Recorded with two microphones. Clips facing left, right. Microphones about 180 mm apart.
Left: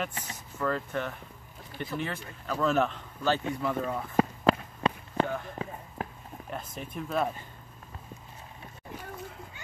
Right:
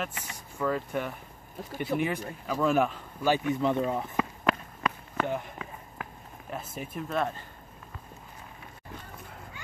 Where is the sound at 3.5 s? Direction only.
20° right (ahead or behind).